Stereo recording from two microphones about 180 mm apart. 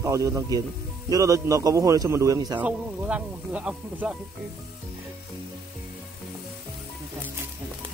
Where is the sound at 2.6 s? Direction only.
5° right (ahead or behind).